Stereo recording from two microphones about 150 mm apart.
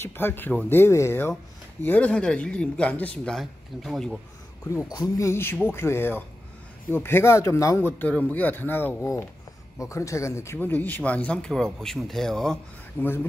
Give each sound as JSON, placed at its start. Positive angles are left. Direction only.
{"t": 0.0, "sound": "speech", "side_deg": 15}
{"t": 4.6, "sound": "speech", "side_deg": 25}
{"t": 13.0, "sound": "speech", "side_deg": 15}